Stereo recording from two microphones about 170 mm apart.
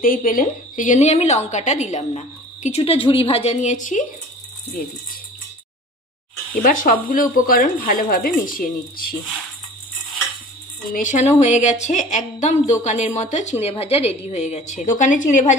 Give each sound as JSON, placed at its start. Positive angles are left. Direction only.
{"t": 0.0, "sound": "a woman's voice", "side_deg": 55}
{"t": 6.5, "sound": "speech", "side_deg": 55}
{"t": 10.9, "sound": "a woman's voice", "side_deg": 50}